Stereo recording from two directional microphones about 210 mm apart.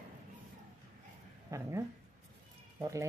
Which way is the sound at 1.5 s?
15° right (ahead or behind).